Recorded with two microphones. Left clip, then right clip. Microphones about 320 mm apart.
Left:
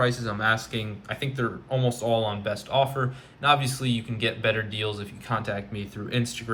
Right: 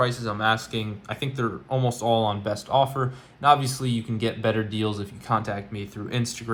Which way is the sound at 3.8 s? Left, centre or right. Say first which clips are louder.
Even; centre.